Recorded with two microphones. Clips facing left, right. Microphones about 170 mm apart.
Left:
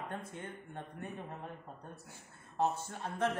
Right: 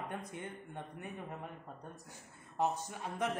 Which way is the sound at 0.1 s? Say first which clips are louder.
Even; 15° right (ahead or behind).